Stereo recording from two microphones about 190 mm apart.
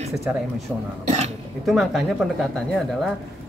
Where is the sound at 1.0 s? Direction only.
35° right (ahead or behind).